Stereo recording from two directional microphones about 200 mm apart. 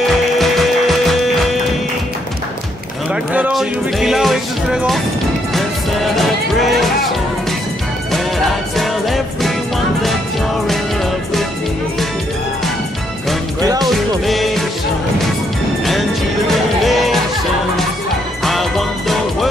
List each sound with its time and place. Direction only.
0.4 s music: centre (ahead or behind)
3.3 s speech: 5° right (ahead or behind)
6.1 s music: centre (ahead or behind)
8.7 s music: centre (ahead or behind)
13.6 s music: 20° right (ahead or behind)
13.8 s music: centre (ahead or behind)
16.4 s music: centre (ahead or behind)
18.4 s music: centre (ahead or behind)